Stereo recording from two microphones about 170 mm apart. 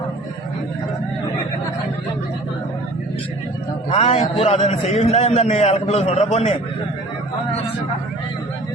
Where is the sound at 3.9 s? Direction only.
35° left (ahead or behind).